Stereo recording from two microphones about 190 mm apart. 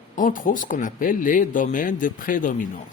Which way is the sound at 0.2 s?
45° left (ahead or behind).